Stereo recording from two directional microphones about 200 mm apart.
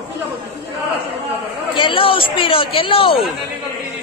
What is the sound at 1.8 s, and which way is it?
A woman's voice, 25° left (ahead or behind).